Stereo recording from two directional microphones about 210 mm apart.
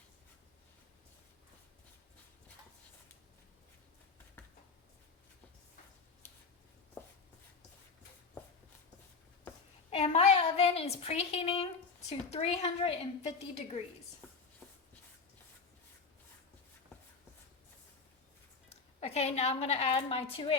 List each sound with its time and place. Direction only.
9.9 s a woman's voice: 30° left (ahead or behind)
14.2 s a sound: 5° left (ahead or behind)
18.9 s a woman's voice: 30° left (ahead or behind)